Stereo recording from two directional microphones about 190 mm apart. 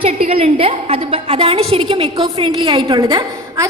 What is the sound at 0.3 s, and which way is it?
A woman's voice, 30° right (ahead or behind).